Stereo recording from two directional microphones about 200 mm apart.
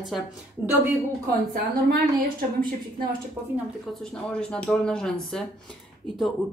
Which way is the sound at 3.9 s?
5° left (ahead or behind).